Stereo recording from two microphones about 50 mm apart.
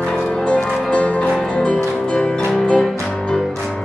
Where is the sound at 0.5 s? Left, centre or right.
Left.